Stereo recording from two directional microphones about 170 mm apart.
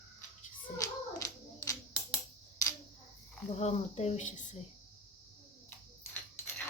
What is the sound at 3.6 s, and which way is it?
Speech, 40° left (ahead or behind).